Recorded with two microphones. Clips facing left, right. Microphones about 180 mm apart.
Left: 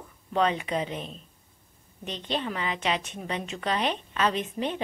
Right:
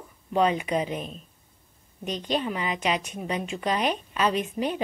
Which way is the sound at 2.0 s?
25° left (ahead or behind).